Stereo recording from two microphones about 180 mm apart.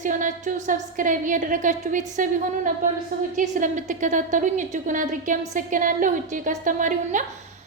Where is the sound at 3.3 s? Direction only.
45° right (ahead or behind).